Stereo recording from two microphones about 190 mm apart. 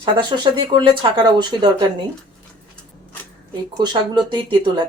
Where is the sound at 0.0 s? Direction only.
25° right (ahead or behind).